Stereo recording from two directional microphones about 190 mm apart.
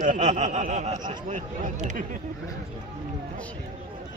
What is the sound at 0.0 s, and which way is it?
Speech, 40° right (ahead or behind).